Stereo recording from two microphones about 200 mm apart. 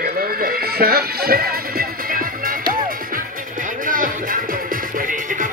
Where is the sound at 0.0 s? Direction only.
45° right (ahead or behind).